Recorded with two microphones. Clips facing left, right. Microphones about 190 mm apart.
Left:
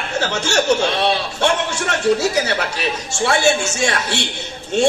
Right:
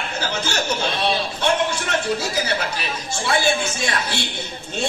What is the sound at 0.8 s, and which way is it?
Speech, 75° left (ahead or behind).